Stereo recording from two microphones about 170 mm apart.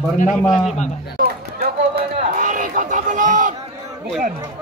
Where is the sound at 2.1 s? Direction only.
50° right (ahead or behind).